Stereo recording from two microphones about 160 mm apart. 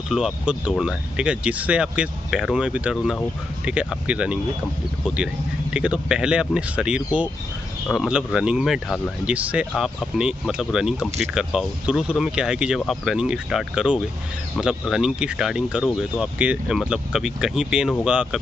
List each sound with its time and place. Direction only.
0.1 s speech: 5° right (ahead or behind)